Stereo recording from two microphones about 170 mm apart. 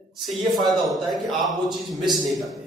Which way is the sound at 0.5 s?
25° right (ahead or behind).